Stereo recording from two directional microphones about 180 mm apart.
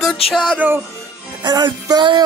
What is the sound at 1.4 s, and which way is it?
Music, 25° right (ahead or behind).